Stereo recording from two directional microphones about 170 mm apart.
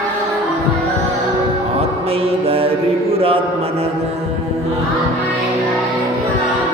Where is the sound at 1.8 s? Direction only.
35° right (ahead or behind).